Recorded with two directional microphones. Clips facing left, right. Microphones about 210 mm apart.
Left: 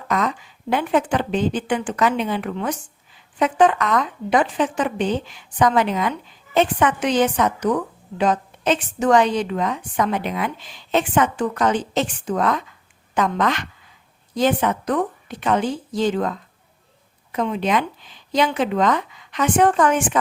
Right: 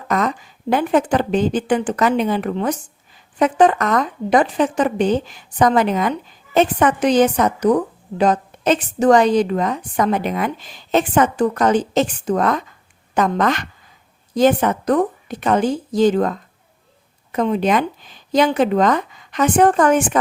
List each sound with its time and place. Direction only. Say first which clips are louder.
0.1 s a woman's voice: right 3 dB; 45° right (ahead or behind)